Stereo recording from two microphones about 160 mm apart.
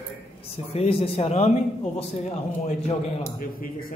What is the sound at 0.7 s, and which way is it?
A man's voice, 35° left (ahead or behind).